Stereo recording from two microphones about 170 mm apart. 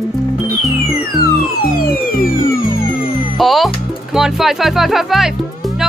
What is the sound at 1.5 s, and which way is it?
Music, 60° left (ahead or behind).